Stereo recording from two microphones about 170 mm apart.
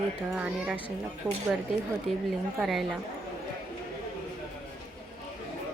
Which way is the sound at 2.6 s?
Centre (ahead or behind).